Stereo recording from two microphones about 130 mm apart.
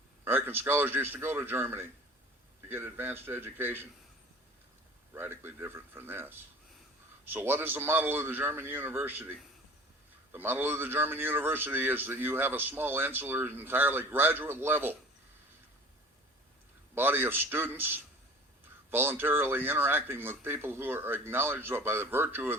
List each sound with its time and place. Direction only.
0.3 s a man's voice: 15° right (ahead or behind)
5.1 s a man's voice: 15° right (ahead or behind)
10.3 s a man's voice: 15° right (ahead or behind)
16.9 s a man's voice: 15° right (ahead or behind)